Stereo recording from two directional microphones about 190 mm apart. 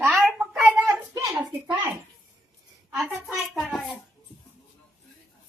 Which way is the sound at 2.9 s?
Centre (ahead or behind).